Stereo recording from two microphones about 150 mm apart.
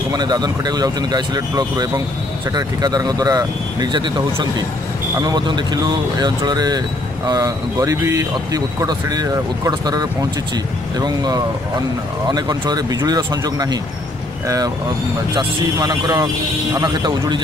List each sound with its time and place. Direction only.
0.1 s speech: 25° right (ahead or behind)
15.3 s speech: 25° right (ahead or behind)